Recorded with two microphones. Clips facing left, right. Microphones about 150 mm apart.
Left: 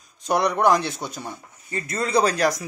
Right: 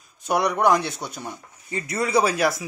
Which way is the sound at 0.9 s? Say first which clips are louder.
Left 1 dB; 15° left (ahead or behind).